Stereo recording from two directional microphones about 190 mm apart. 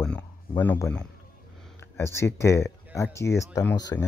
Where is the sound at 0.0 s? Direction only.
10° left (ahead or behind).